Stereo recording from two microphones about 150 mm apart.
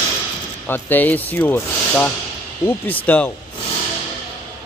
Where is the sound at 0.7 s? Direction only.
10° left (ahead or behind).